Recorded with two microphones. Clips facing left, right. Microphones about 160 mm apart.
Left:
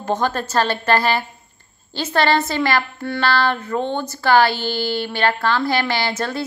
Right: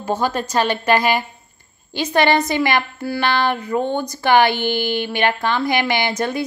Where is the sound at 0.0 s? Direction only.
10° right (ahead or behind).